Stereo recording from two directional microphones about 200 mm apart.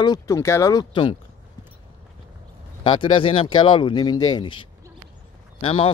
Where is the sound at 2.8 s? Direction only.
25° left (ahead or behind).